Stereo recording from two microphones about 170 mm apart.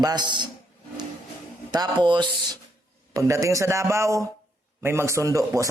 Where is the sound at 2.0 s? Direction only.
25° right (ahead or behind).